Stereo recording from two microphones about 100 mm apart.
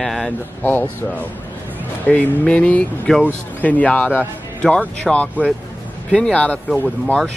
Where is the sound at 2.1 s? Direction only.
15° left (ahead or behind).